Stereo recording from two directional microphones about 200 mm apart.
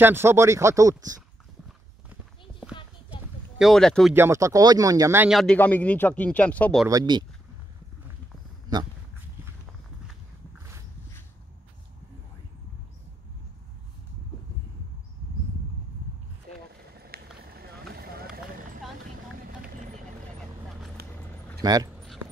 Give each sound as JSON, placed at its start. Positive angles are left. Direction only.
{"t": 0.0, "sound": "speech", "side_deg": -10}
{"t": 3.5, "sound": "speech", "side_deg": 0}
{"t": 4.1, "sound": "speech", "side_deg": -15}
{"t": 5.4, "sound": "speech", "side_deg": 5}
{"t": 6.9, "sound": "speech", "side_deg": -20}
{"t": 17.4, "sound": "vehicle", "side_deg": -50}
{"t": 21.0, "sound": "a sound", "side_deg": -50}
{"t": 21.6, "sound": "speech", "side_deg": -20}